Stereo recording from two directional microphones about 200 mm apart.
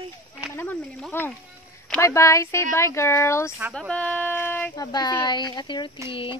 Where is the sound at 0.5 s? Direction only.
10° left (ahead or behind).